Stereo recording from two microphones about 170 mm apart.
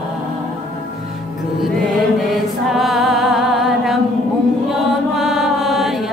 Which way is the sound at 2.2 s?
Centre (ahead or behind).